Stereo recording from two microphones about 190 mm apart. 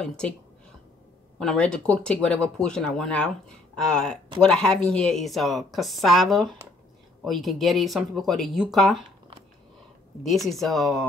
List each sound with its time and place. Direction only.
0.0 s speech: 5° left (ahead or behind)
1.4 s speech: 5° left (ahead or behind)
10.2 s speech: centre (ahead or behind)